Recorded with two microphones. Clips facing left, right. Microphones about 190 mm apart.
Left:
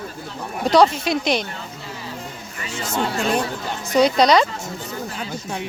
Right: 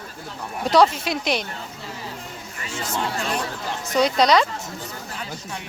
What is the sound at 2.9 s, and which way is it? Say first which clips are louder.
Speech: left 5 dB; 25° left (ahead or behind).